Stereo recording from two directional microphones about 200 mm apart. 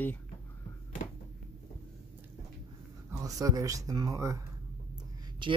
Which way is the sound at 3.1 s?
15° right (ahead or behind).